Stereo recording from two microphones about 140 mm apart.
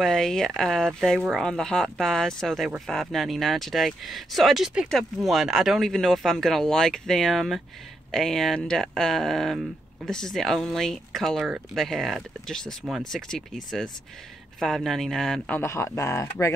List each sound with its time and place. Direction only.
0.0 s speech: 5° left (ahead or behind)
14.6 s speech: centre (ahead or behind)
15.6 s speech: 20° left (ahead or behind)